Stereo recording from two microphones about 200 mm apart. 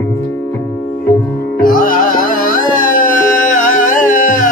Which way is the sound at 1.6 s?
45° left (ahead or behind).